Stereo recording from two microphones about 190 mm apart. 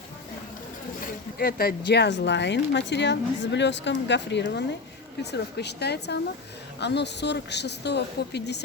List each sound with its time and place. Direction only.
1.4 s a woman's voice: 55° left (ahead or behind)